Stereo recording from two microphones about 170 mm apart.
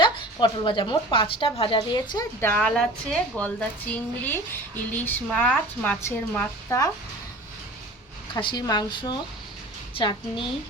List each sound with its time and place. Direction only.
0.0 s a woman's voice: 25° left (ahead or behind)
2.4 s a woman's voice: 10° left (ahead or behind)
8.3 s a woman's voice: 30° left (ahead or behind)